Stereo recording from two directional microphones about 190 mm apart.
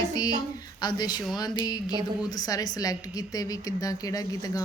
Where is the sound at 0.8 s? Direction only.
20° left (ahead or behind).